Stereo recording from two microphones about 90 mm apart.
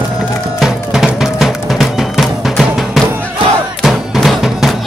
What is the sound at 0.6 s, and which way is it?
Music, 5° right (ahead or behind).